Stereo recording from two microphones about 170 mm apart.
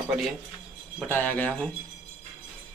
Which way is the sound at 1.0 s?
10° left (ahead or behind).